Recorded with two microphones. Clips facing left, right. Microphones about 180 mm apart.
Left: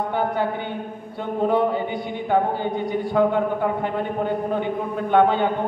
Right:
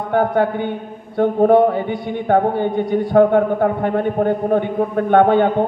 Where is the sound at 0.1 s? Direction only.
55° right (ahead or behind).